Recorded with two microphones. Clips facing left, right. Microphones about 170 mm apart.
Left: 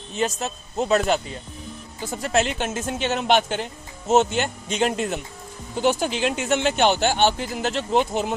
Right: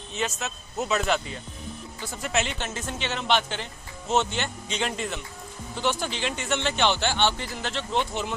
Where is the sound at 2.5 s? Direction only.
50° left (ahead or behind).